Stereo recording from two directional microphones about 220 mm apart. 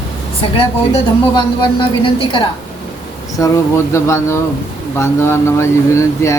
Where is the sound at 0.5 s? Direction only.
25° left (ahead or behind).